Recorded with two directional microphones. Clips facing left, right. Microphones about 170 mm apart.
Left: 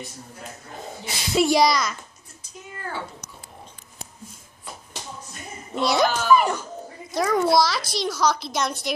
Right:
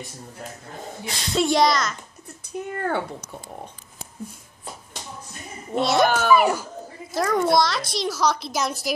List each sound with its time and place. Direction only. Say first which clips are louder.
1.0 s a child's voice: left 2 dB; 5° left (ahead or behind)
2.4 s speech: right 10 dB; 60° right (ahead or behind)
5.8 s a child's voice: right 2 dB; centre (ahead or behind)
6.0 s a child's voice: right 2 dB; 60° right (ahead or behind)
6.3 s a child's voice: right 1 dB; 5° right (ahead or behind)